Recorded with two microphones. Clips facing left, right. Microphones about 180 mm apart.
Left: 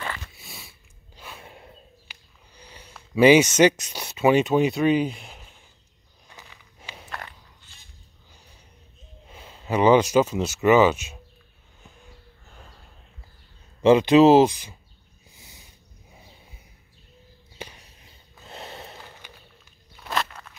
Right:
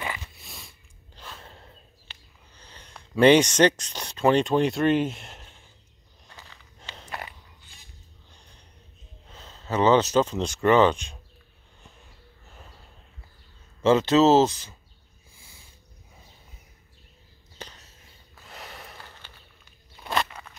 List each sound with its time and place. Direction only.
0.3 s a sound: centre (ahead or behind)
6.4 s walk: 10° left (ahead or behind)
7.1 s biting: 10° right (ahead or behind)
8.3 s gasp: 5° left (ahead or behind)
9.3 s speech: 10° left (ahead or behind)
13.8 s speech: 15° left (ahead or behind)
15.3 s a sound: 20° left (ahead or behind)
17.6 s sniff: 10° left (ahead or behind)
19.2 s walk: 15° left (ahead or behind)
20.0 s walk: 5° right (ahead or behind)